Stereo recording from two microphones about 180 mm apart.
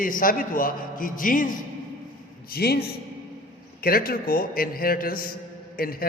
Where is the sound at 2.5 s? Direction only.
60° left (ahead or behind).